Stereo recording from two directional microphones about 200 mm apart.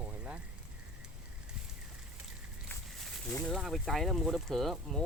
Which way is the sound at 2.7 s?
5° left (ahead or behind).